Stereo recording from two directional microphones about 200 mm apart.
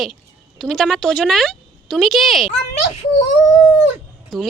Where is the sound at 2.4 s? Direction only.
35° left (ahead or behind).